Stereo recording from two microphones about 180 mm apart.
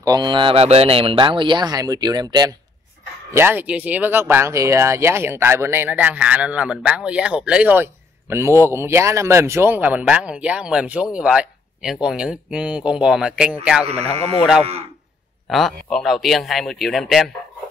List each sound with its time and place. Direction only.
0.0 s speech: 20° right (ahead or behind)
3.3 s speech: 10° right (ahead or behind)
15.4 s speech: centre (ahead or behind)